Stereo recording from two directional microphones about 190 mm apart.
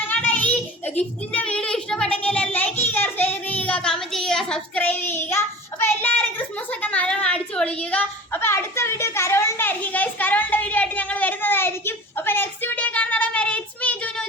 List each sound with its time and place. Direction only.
0.1 s child singing: 10° left (ahead or behind)
6.8 s a woman's voice: 5° left (ahead or behind)